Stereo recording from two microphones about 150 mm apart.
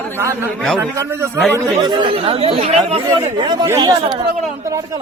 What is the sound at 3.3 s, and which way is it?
Speech, 30° right (ahead or behind).